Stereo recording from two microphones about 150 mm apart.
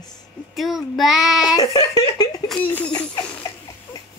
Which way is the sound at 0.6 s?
Centre (ahead or behind).